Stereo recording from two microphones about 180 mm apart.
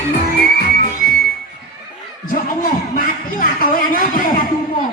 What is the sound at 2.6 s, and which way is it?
Music, 50° left (ahead or behind).